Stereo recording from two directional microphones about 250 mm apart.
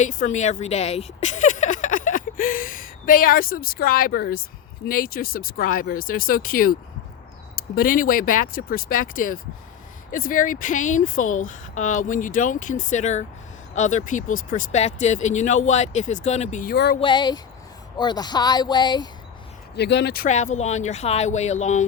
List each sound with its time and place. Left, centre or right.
0.0 s speech: left
17.0 s speech: centre
19.7 s speech: left